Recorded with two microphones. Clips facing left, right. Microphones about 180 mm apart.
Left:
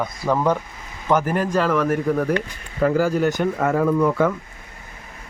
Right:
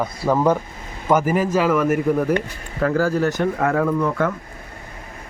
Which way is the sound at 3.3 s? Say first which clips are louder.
Even; centre (ahead or behind).